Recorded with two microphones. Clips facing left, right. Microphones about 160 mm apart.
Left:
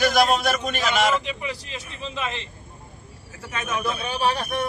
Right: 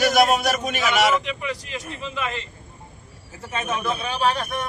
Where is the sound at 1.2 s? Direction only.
30° left (ahead or behind).